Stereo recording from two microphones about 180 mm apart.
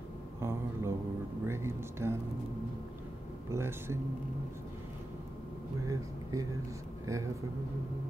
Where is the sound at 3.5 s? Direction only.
15° right (ahead or behind).